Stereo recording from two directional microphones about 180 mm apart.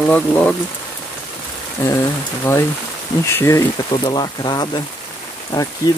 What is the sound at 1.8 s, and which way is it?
Speech, 15° left (ahead or behind).